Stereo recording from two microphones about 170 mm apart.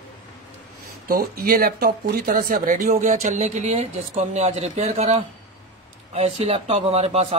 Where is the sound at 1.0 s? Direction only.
60° right (ahead or behind).